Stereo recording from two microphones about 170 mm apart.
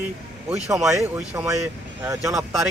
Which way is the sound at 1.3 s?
15° right (ahead or behind).